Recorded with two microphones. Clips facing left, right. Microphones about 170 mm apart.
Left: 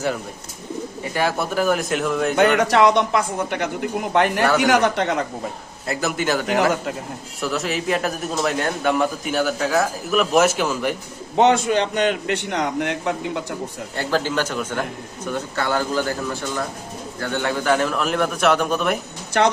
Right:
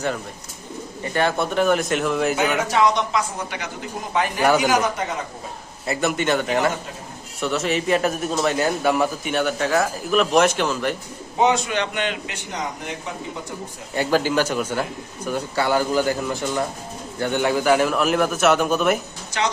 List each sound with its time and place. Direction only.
1.1 s a man's voice: 5° left (ahead or behind)
2.6 s speech: 65° left (ahead or behind)
5.8 s a man's voice: centre (ahead or behind)
11.3 s speech: 60° left (ahead or behind)
11.7 s a man's voice: 40° left (ahead or behind)
12.3 s speech: 65° left (ahead or behind)
13.9 s a man's voice: 10° right (ahead or behind)
19.3 s speech: 55° left (ahead or behind)